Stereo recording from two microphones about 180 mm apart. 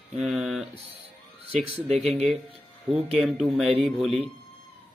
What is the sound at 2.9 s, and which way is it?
Speech, centre (ahead or behind).